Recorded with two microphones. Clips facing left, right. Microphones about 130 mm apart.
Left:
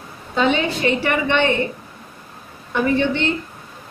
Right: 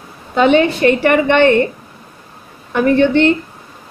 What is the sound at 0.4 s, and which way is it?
A woman's voice, 60° right (ahead or behind).